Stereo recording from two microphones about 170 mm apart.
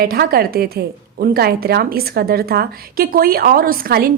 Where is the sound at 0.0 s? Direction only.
65° right (ahead or behind).